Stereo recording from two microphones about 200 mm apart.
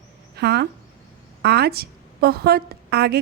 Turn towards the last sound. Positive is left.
turn(degrees=-55)  # may be behind; listen again after turning